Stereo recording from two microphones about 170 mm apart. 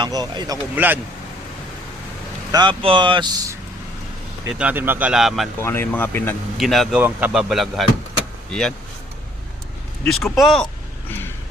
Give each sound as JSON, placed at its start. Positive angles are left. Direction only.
{"t": 0.0, "sound": "speech", "side_deg": -25}
{"t": 2.5, "sound": "speech", "side_deg": -25}
{"t": 4.4, "sound": "speech", "side_deg": -5}
{"t": 5.6, "sound": "speech", "side_deg": 10}
{"t": 6.6, "sound": "speech", "side_deg": 0}
{"t": 10.0, "sound": "speech", "side_deg": 0}